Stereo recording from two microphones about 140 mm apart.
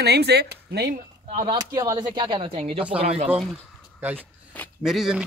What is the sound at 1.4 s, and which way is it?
Speech, 30° right (ahead or behind).